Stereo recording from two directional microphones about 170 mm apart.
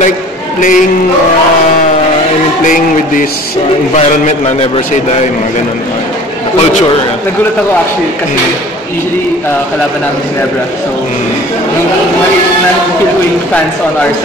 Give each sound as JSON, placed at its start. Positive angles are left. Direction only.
{"t": 0.6, "sound": "music", "side_deg": 50}
{"t": 2.6, "sound": "music", "side_deg": 50}